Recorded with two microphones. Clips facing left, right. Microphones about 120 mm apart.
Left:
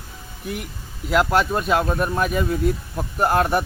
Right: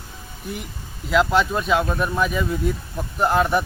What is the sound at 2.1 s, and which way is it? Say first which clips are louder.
Speech: right 1 dB; 50° left (ahead or behind).